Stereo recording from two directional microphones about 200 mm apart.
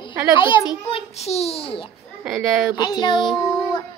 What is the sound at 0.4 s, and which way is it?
A child's voice, 25° left (ahead or behind).